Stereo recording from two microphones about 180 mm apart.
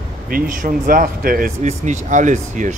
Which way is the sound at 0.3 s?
50° right (ahead or behind).